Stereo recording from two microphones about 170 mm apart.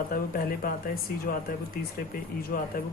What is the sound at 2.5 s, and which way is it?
Speech, 70° left (ahead or behind).